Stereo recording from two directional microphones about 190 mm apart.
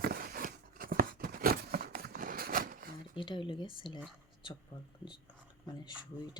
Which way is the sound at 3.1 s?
25° left (ahead or behind).